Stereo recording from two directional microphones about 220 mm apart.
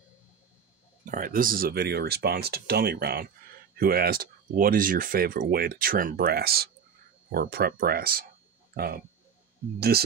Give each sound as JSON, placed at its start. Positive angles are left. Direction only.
{"t": 1.1, "sound": "speech", "side_deg": -40}